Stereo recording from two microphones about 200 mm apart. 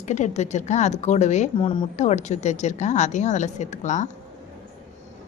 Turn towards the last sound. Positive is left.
turn(degrees=35)  # may be behind; listen again after turning